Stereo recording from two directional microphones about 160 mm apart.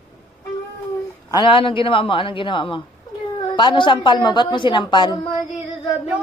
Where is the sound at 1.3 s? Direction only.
30° left (ahead or behind).